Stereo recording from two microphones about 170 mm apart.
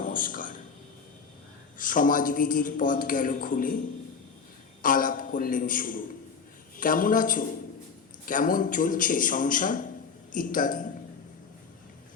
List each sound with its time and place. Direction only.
0.0 s a sound: 55° left (ahead or behind)
1.8 s speech: 55° left (ahead or behind)
4.8 s a man's voice: 55° left (ahead or behind)